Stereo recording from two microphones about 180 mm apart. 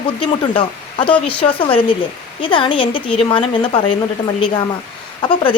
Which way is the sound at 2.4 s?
30° left (ahead or behind).